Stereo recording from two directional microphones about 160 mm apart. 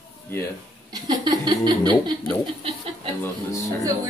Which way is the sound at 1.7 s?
30° right (ahead or behind).